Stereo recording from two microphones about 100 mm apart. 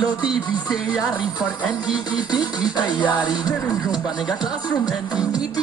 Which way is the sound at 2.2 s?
45° left (ahead or behind).